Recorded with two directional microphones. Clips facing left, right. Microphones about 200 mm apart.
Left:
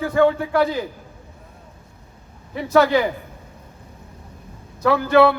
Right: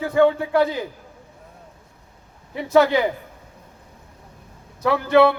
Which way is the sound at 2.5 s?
20° right (ahead or behind).